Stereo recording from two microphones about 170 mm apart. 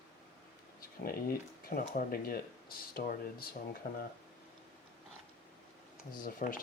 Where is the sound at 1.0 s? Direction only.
60° left (ahead or behind).